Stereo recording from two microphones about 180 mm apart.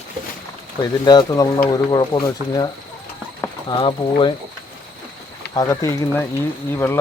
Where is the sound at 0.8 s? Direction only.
25° left (ahead or behind).